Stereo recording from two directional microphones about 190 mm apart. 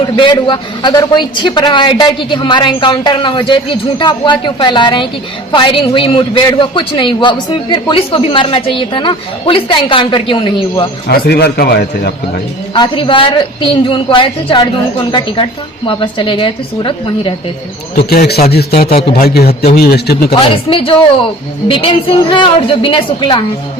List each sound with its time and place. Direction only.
0.0 s a man's voice: 25° left (ahead or behind)
11.1 s a man's voice: 60° left (ahead or behind)
12.7 s a man's voice: 25° left (ahead or behind)
15.9 s a man's voice: 25° left (ahead or behind)
18.1 s a man's voice: 55° left (ahead or behind)
20.3 s a man's voice: 30° left (ahead or behind)